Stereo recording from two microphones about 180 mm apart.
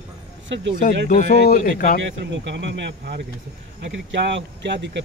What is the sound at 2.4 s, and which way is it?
Speech, 80° right.